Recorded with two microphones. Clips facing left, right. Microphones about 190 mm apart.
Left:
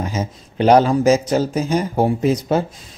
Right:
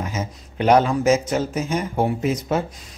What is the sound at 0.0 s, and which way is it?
Speech, 30° left (ahead or behind).